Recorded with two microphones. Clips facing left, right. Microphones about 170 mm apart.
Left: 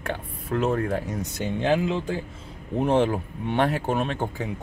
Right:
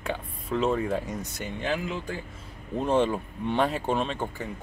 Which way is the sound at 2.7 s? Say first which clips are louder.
Left 3 dB; 10° left (ahead or behind).